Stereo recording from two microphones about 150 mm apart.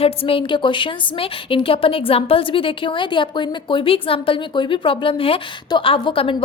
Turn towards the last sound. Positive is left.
turn(degrees=35)  # may be behind; listen again after turning